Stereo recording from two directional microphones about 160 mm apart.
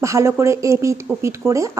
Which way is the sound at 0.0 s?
20° right (ahead or behind).